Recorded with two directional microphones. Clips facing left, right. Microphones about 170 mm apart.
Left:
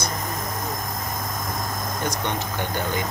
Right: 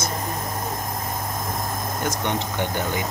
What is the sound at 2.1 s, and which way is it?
Speech, 20° right (ahead or behind).